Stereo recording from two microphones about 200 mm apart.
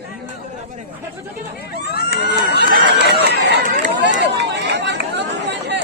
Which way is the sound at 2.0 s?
55° right (ahead or behind).